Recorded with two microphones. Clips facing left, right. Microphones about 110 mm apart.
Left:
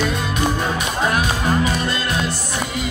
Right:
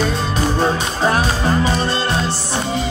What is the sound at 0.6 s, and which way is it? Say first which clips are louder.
Music: right 4 dB; 30° right (ahead or behind).